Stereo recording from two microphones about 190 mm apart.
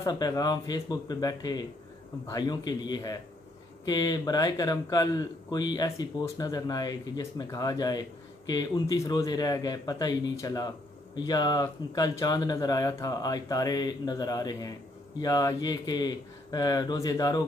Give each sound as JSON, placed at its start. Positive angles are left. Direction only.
{"t": 0.0, "sound": "speech", "side_deg": 20}